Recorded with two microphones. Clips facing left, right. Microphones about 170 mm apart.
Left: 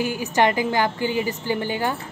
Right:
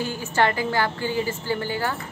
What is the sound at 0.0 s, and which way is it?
A woman's voice, 15° left (ahead or behind).